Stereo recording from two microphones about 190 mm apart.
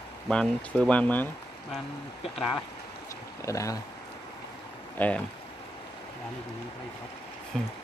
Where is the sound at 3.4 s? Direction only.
15° left (ahead or behind).